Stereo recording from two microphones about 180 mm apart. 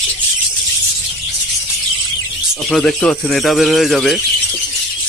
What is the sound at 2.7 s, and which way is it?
Speech, 5° left (ahead or behind).